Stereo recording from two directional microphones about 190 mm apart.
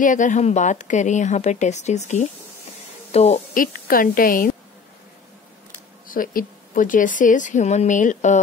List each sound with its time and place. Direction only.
0.0 s a woman's voice: 40° left (ahead or behind)
6.0 s speech: 45° left (ahead or behind)